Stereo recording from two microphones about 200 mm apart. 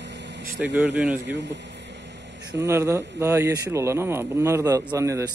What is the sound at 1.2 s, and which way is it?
Air conditioning, 60° right (ahead or behind).